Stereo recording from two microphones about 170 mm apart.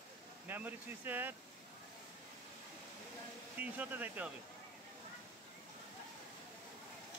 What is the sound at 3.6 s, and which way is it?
Speech, 10° right (ahead or behind).